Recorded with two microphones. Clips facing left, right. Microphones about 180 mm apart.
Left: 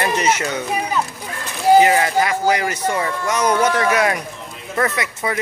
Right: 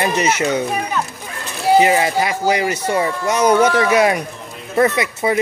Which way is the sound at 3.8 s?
20° right (ahead or behind).